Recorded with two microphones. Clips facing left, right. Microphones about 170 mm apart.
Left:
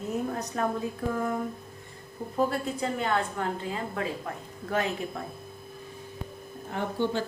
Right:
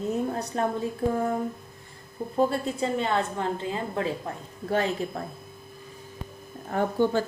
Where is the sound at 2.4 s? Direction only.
30° right (ahead or behind).